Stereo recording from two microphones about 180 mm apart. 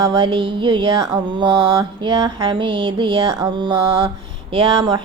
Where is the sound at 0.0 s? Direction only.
20° right (ahead or behind).